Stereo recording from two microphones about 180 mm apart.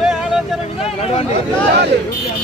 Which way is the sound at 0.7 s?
35° left (ahead or behind).